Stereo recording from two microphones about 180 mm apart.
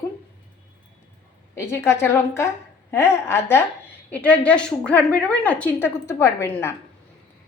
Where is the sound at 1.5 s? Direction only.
15° left (ahead or behind).